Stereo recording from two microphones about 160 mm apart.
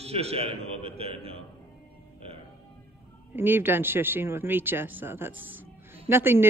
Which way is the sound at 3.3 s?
15° right (ahead or behind).